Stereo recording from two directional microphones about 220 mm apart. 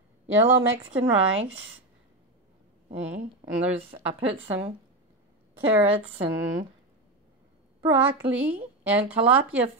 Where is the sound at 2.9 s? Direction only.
5° right (ahead or behind).